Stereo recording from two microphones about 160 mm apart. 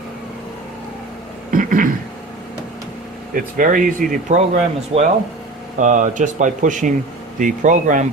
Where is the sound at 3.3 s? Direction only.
60° right (ahead or behind).